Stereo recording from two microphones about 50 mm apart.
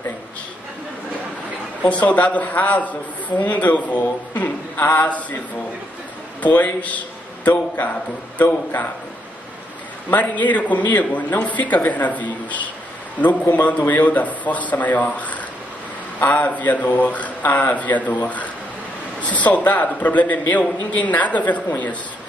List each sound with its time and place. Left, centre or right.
1.8 s a man's voice: left
4.7 s speech: left
6.4 s a man's voice: left
10.1 s a man's voice: left